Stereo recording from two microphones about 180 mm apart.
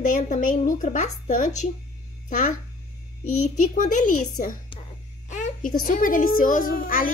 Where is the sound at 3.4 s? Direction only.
45° left (ahead or behind).